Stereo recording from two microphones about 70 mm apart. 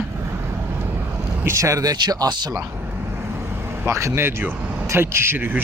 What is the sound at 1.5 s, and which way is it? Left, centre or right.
Speech, right.